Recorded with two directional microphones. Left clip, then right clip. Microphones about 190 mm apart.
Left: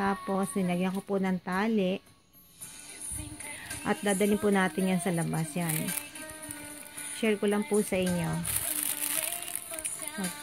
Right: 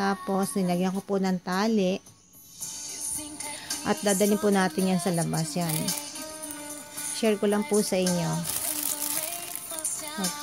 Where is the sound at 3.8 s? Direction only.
5° right (ahead or behind).